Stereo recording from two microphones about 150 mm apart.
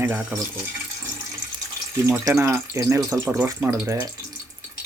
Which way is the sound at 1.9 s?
15° right (ahead or behind).